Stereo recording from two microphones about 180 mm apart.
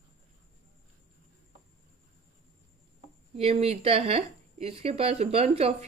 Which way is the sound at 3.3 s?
35° right (ahead or behind).